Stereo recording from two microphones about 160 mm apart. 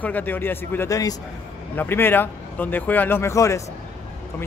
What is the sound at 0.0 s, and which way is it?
A man's voice, 10° left (ahead or behind).